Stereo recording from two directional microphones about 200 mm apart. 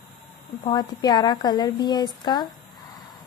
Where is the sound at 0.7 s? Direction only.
20° left (ahead or behind).